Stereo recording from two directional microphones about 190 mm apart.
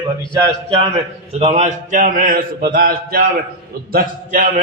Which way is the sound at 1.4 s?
40° right (ahead or behind).